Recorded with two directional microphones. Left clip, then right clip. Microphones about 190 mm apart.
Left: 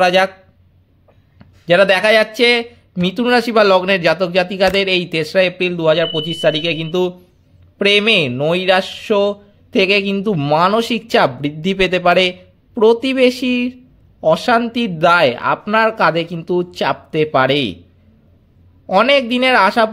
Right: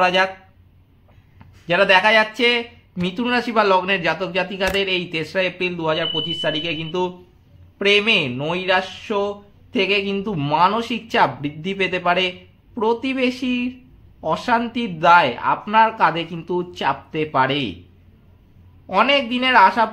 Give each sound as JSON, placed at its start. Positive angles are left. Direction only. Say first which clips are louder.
{"t": 0.0, "sound": "speech", "louder": "left 4 dB", "side_deg": 35}
{"t": 1.4, "sound": "speech", "louder": "left 6 dB", "side_deg": 35}
{"t": 18.9, "sound": "speech", "louder": "left 5 dB", "side_deg": 35}